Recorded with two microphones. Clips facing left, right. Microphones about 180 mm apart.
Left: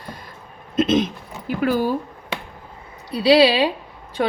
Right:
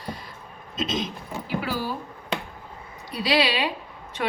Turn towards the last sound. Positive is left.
turn(degrees=35)  # may be behind; listen again after turning